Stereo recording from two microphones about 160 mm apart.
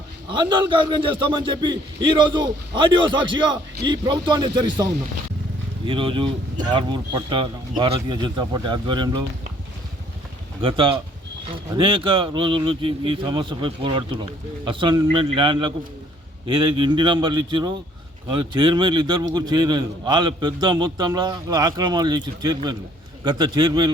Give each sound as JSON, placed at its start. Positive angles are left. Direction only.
{"t": 0.3, "sound": "a man's voice", "side_deg": -30}
{"t": 10.6, "sound": "a man's voice", "side_deg": -35}